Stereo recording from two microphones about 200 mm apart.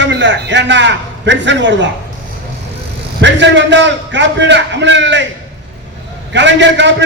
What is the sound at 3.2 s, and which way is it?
A man's voice, 65° right (ahead or behind).